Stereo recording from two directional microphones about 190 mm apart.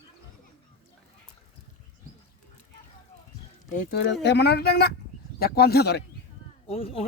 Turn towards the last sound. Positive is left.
turn(degrees=30)  # may be behind; listen again after turning